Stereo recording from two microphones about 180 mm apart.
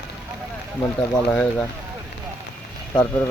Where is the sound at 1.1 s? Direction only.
5° left (ahead or behind).